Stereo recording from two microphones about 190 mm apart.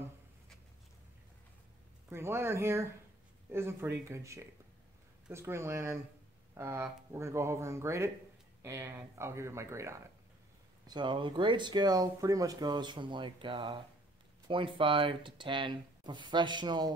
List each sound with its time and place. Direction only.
2.0 s speech: 10° right (ahead or behind)